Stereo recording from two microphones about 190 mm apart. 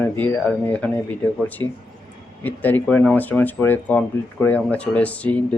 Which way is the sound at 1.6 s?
20° left (ahead or behind).